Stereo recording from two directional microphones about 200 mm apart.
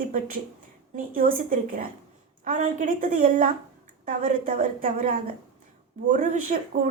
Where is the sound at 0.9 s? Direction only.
40° right (ahead or behind).